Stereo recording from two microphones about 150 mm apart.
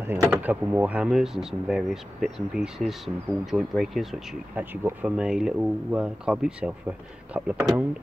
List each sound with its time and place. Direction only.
0.0 s speech: 15° right (ahead or behind)